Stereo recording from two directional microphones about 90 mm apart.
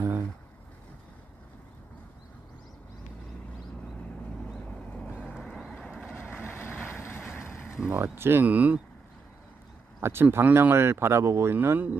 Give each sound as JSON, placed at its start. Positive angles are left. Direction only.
{"t": 4.5, "sound": "vehicle", "side_deg": 15}
{"t": 5.2, "sound": "vehicle", "side_deg": 0}
{"t": 7.9, "sound": "speech", "side_deg": -25}
{"t": 10.0, "sound": "speech", "side_deg": -25}
{"t": 11.5, "sound": "speech", "side_deg": -20}